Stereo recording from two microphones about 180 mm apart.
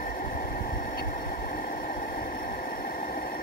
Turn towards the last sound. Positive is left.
turn(degrees=55)  # may be behind; listen again after turning